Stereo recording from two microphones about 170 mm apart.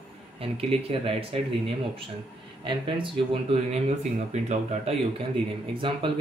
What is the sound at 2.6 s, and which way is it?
Speech, 30° right (ahead or behind).